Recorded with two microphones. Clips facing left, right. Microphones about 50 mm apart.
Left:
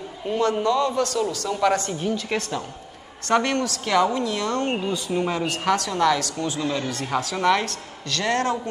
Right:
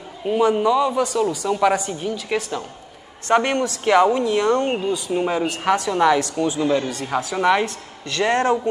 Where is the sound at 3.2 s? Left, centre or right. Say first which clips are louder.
Right 3 dB; right.